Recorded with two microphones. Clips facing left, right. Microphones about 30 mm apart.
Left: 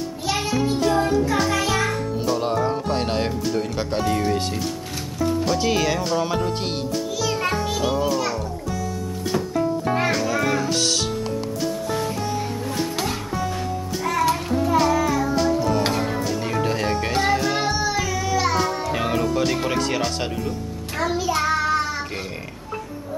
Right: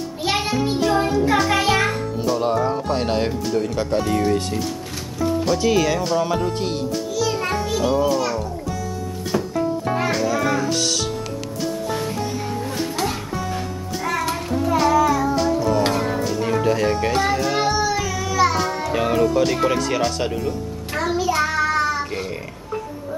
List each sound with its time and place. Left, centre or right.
0.2 s music: right
2.2 s speech: centre
5.2 s music: centre
5.6 s speech: centre
7.2 s music: centre
7.9 s speech: centre
9.3 s music: centre
12.9 s music: centre
19.8 s speech: centre
21.0 s child singing: centre